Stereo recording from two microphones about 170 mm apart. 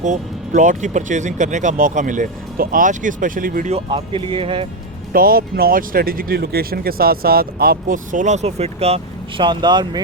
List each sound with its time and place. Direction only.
0.0 s speech: 50° right (ahead or behind)
3.7 s speech: 35° right (ahead or behind)
5.1 s speech: 60° right (ahead or behind); by 9.0 s 35° right (ahead or behind)
9.4 s speech: 25° right (ahead or behind)